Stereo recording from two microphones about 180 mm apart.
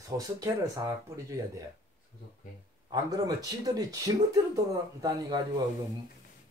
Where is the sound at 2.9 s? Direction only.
20° right (ahead or behind).